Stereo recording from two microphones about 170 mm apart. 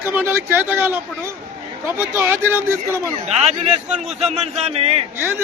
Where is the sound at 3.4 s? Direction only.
40° right (ahead or behind).